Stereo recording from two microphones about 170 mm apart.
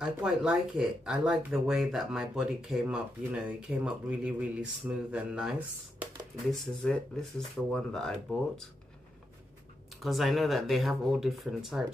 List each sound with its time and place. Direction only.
0.0 s speech: 5° right (ahead or behind)
10.0 s speech: centre (ahead or behind)